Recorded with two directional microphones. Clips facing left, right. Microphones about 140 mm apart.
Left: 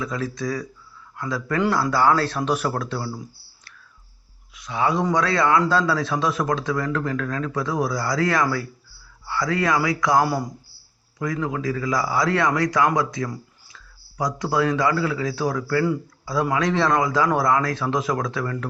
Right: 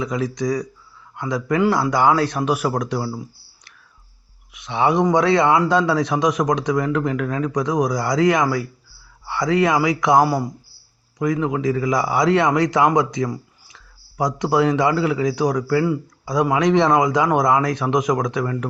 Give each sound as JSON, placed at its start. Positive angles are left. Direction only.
{"t": 0.0, "sound": "a man's voice", "side_deg": -15}
{"t": 4.5, "sound": "a man's voice", "side_deg": -25}
{"t": 10.2, "sound": "speech", "side_deg": -5}
{"t": 11.2, "sound": "a man's voice", "side_deg": -20}